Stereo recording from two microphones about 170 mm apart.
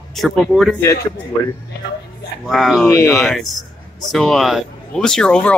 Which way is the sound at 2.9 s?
15° left (ahead or behind).